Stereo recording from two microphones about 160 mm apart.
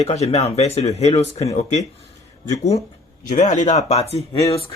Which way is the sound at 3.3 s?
50° left (ahead or behind).